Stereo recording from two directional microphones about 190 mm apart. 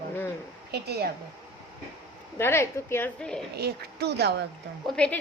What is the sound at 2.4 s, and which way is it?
A woman's voice, 15° left (ahead or behind).